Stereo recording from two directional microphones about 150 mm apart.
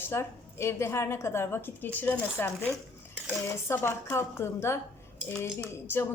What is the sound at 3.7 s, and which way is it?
A woman's voice, 15° left (ahead or behind).